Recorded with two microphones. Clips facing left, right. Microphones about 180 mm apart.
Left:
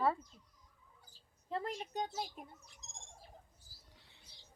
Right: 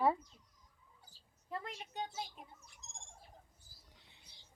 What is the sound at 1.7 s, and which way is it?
Speech, 40° left (ahead or behind).